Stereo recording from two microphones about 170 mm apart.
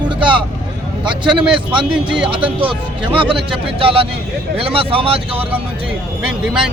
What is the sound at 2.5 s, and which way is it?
Speech, 30° right (ahead or behind).